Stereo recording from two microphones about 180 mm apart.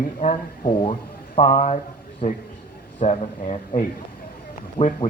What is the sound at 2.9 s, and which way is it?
Speech, 35° left (ahead or behind).